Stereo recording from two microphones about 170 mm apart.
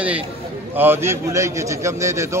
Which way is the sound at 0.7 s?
15° right (ahead or behind).